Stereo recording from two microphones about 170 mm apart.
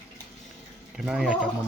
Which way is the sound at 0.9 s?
5° right (ahead or behind).